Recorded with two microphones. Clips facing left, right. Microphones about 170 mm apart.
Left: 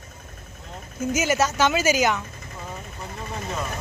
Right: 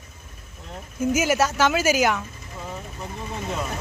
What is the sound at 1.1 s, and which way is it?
Speech, 10° right (ahead or behind).